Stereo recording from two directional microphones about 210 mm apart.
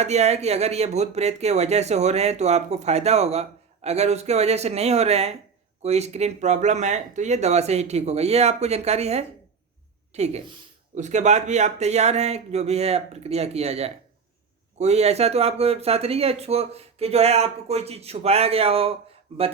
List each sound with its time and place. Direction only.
0.0 s speech: 30° right (ahead or behind)